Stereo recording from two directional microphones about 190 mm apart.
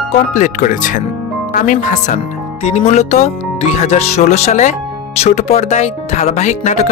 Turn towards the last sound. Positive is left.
turn(degrees=35)  # may be behind; listen again after turning